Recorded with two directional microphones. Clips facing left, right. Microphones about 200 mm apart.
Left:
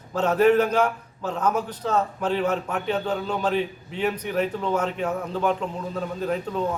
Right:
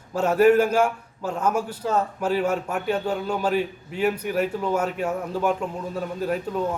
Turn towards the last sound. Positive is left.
turn(degrees=-5)  # may be behind; listen again after turning